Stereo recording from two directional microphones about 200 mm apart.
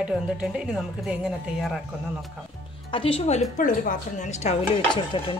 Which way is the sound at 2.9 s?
25° left (ahead or behind).